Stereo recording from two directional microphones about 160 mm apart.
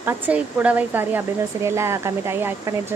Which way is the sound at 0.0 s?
10° right (ahead or behind).